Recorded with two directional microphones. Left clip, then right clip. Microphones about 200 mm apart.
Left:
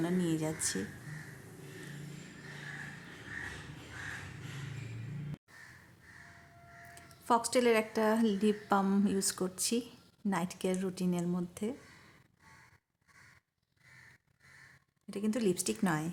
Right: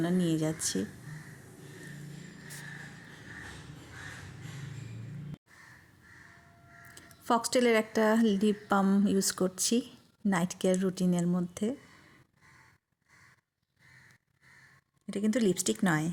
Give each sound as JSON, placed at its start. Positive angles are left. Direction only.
{"t": 0.0, "sound": "a woman's voice", "side_deg": -15}
{"t": 6.9, "sound": "speech", "side_deg": -15}
{"t": 15.1, "sound": "speech", "side_deg": -20}